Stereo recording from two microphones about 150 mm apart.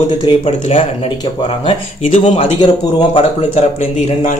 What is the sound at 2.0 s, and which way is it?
Speech, 50° left (ahead or behind).